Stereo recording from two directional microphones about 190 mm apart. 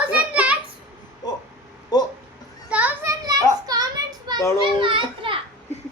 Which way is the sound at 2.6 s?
5° right (ahead or behind).